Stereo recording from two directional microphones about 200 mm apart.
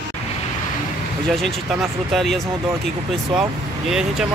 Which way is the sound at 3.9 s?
5° right (ahead or behind).